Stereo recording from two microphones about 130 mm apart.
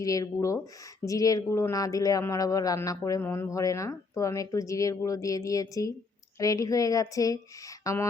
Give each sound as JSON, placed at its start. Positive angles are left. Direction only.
{"t": 0.0, "sound": "speech", "side_deg": 25}